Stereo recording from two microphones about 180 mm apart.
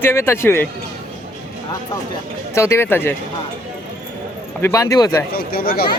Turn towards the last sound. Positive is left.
turn(degrees=55)  # may be behind; listen again after turning